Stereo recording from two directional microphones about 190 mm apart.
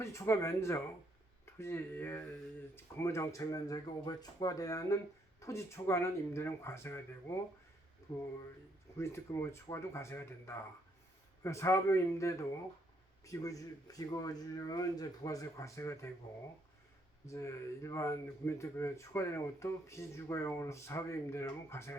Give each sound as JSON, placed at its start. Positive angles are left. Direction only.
{"t": 0.0, "sound": "speech", "side_deg": 15}
{"t": 9.0, "sound": "speech", "side_deg": 15}
{"t": 17.2, "sound": "speech", "side_deg": 15}